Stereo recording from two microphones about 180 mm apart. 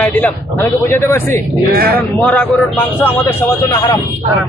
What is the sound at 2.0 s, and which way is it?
Speech, 10° left (ahead or behind).